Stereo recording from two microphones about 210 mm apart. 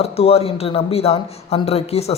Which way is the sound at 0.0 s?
30° left (ahead or behind).